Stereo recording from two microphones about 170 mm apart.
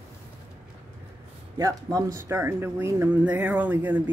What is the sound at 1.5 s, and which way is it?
Speech, 20° right (ahead or behind).